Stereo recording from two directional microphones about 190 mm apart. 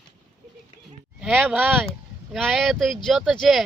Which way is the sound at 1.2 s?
5° right (ahead or behind).